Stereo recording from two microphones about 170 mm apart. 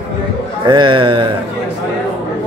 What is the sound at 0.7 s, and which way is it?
Speech, 25° right (ahead or behind).